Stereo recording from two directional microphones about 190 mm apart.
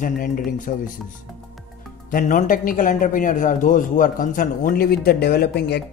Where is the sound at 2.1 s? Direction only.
45° left (ahead or behind).